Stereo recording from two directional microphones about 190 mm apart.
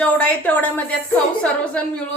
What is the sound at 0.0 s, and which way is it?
A woman's voice, 5° left (ahead or behind).